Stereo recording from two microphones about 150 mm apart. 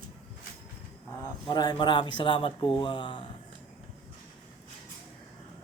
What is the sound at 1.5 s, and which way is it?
A man's voice, 30° left (ahead or behind).